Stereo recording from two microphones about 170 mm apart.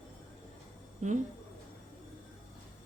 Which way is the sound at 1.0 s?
45° right (ahead or behind).